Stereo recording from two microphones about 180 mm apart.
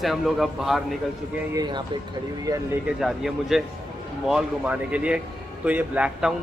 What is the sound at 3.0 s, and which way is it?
A man's voice, centre (ahead or behind).